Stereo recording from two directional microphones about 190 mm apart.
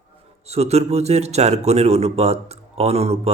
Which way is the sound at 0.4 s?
35° right (ahead or behind).